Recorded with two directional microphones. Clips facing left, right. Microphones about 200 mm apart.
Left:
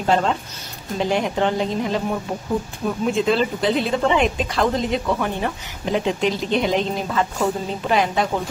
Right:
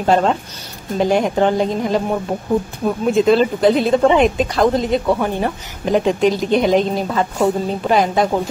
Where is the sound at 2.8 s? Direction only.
40° right (ahead or behind).